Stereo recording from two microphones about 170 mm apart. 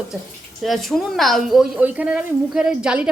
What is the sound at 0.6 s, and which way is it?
A woman's voice, centre (ahead or behind).